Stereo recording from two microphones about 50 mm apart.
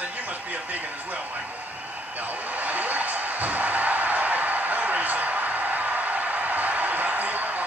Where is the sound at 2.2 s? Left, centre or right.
Right.